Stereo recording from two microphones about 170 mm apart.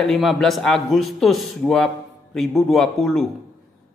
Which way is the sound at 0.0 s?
Centre (ahead or behind).